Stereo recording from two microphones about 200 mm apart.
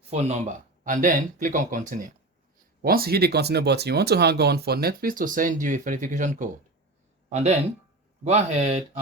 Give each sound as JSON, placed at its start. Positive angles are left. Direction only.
{"t": 0.1, "sound": "speech", "side_deg": -30}